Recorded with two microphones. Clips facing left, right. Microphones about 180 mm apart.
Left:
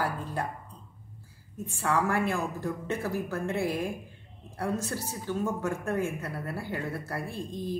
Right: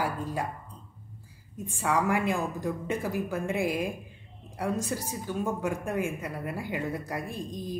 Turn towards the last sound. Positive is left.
turn(degrees=-15)  # may be behind; listen again after turning